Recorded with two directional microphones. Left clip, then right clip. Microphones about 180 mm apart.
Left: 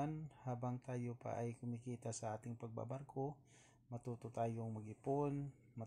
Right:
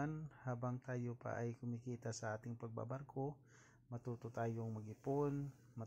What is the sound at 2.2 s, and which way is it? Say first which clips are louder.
Speech: right 1 dB; centre (ahead or behind).